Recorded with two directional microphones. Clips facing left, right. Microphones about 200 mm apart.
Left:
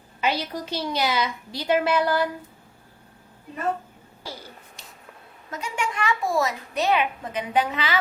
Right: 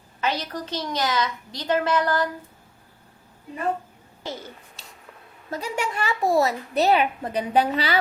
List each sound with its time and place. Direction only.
0.2 s a woman's voice: 10° left (ahead or behind)
4.2 s a child's voice: 25° right (ahead or behind)
4.8 s a sound: 15° left (ahead or behind)
5.5 s a woman's voice: 35° right (ahead or behind)